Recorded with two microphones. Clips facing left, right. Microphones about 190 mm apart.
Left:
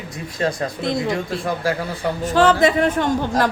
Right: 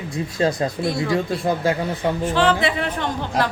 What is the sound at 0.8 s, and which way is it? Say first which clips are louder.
Speech: even; 20° left (ahead or behind).